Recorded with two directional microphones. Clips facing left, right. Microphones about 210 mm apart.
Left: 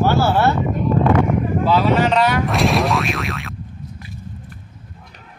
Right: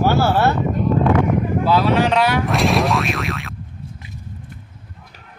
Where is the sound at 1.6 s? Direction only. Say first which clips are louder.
Left 1 dB; 5° right (ahead or behind).